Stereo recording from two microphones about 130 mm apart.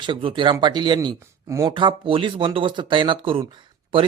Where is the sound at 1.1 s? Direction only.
25° right (ahead or behind).